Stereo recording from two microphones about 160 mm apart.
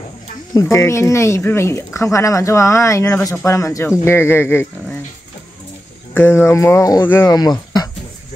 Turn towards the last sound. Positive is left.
turn(degrees=25)  # may be behind; listen again after turning